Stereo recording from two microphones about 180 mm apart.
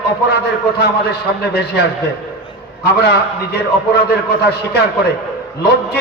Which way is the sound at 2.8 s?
65° left (ahead or behind).